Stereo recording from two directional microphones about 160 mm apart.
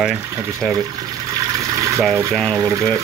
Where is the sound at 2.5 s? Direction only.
20° right (ahead or behind).